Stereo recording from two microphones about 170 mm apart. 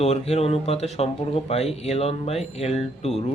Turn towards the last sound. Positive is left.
turn(degrees=40)  # may be behind; listen again after turning